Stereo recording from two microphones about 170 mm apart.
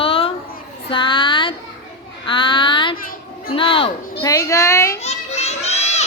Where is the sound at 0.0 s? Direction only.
35° left (ahead or behind).